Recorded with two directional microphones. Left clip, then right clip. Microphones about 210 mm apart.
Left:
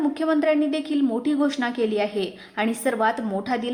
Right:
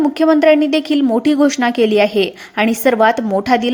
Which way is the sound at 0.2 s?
30° right (ahead or behind).